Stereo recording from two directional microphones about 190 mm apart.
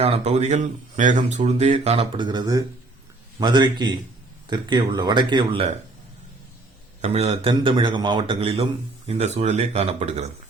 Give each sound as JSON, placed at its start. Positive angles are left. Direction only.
{"t": 0.0, "sound": "a man's voice", "side_deg": -35}
{"t": 7.0, "sound": "a man's voice", "side_deg": -35}